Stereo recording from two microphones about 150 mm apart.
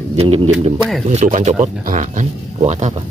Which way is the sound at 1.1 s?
50° right (ahead or behind).